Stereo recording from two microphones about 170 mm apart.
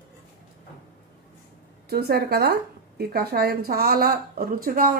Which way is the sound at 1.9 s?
65° right (ahead or behind).